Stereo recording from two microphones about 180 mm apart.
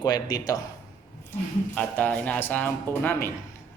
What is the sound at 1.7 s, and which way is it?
Speech, 5° left (ahead or behind).